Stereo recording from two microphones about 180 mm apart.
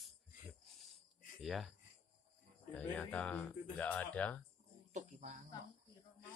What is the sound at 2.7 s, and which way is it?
Speech, 10° left (ahead or behind).